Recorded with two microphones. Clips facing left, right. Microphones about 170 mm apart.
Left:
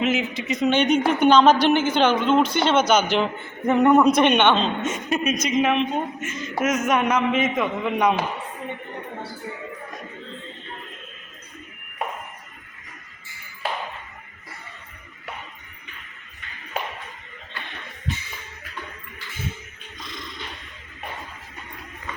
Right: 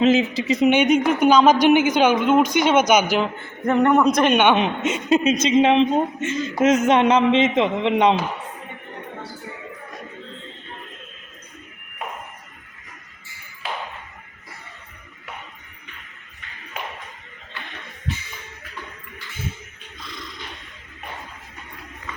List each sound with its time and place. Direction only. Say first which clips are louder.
0.0 s speech: right 6 dB; 30° right (ahead or behind)
0.7 s speech: even; 10° right (ahead or behind)
3.7 s a man's voice: left 1 dB; 5° left (ahead or behind)
4.4 s a man's voice: right 2 dB; 15° right (ahead or behind)